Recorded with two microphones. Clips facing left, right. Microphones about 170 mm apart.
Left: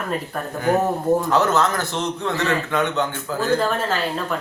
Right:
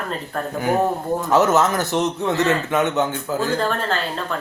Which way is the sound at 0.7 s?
10° right (ahead or behind).